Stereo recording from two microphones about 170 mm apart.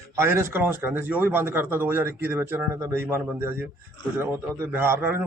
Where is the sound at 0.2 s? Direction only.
15° right (ahead or behind).